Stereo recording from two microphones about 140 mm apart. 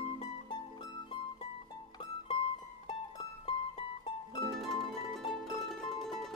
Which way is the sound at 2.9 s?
40° left (ahead or behind).